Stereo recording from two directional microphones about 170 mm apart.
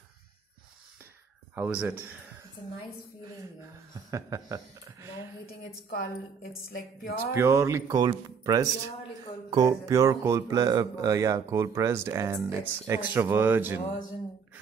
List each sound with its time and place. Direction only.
1.5 s speech: 10° right (ahead or behind)
3.9 s speech: 20° right (ahead or behind)
5.6 s a woman's voice: 65° left (ahead or behind)
7.3 s speech: 15° right (ahead or behind)